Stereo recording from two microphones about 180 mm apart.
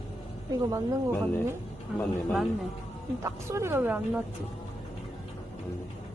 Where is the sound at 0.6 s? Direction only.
20° right (ahead or behind).